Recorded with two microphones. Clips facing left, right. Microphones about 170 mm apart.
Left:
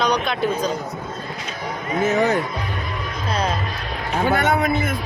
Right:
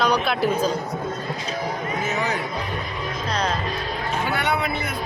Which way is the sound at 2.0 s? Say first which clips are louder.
Left 9 dB; 50° left (ahead or behind).